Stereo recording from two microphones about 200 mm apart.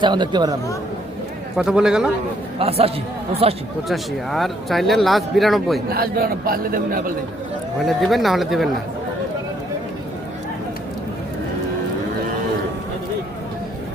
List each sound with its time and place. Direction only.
0.0 s speech: 20° right (ahead or behind)
1.5 s speech: 5° right (ahead or behind)
2.6 s speech: 30° right (ahead or behind)
3.8 s speech: centre (ahead or behind)
5.9 s a man's voice: 50° right (ahead or behind)
7.9 s speech: centre (ahead or behind)